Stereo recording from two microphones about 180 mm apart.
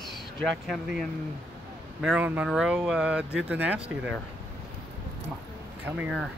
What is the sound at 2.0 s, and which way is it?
Speech, 10° right (ahead or behind).